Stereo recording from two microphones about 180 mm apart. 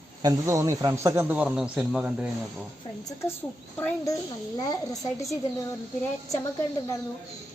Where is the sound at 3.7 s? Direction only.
15° left (ahead or behind).